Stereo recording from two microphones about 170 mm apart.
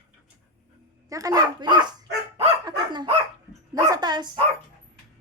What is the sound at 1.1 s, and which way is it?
Dog, 20° right (ahead or behind).